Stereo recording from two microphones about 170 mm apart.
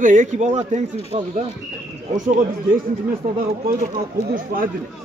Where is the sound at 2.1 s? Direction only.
50° right (ahead or behind).